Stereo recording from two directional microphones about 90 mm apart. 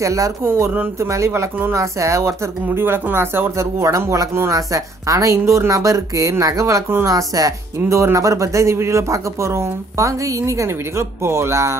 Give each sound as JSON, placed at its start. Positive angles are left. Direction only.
{"t": 0.0, "sound": "speech", "side_deg": -35}